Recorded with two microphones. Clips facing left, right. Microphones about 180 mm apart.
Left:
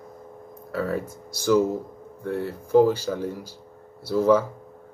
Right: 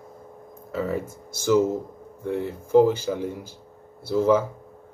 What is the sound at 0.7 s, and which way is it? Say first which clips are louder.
Speech: even; 15° right (ahead or behind).